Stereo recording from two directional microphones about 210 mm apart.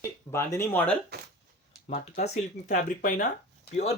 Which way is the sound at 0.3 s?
10° left (ahead or behind).